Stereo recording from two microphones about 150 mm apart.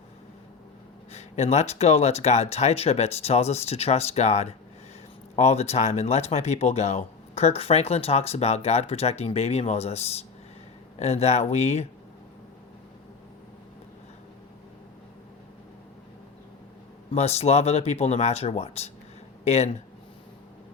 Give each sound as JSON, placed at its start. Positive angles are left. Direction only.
{"t": 1.1, "sound": "speech", "side_deg": 45}
{"t": 17.1, "sound": "speech", "side_deg": 45}